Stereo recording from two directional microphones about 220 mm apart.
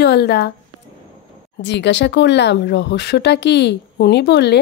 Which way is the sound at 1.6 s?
55° left (ahead or behind).